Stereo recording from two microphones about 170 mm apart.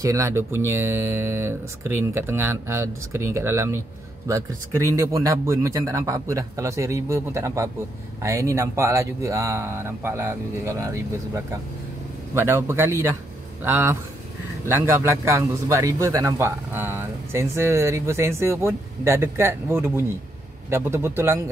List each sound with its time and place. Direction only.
0.0 s a man's voice: 15° right (ahead or behind)